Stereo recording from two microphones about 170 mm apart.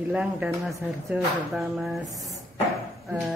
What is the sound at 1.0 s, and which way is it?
Speech, centre (ahead or behind).